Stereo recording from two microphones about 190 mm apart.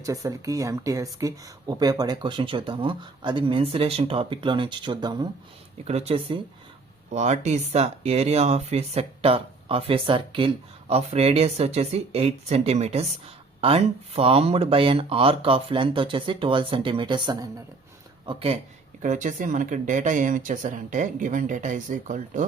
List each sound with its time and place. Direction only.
0.0 s speech: 15° right (ahead or behind)
19.0 s speech: 40° right (ahead or behind)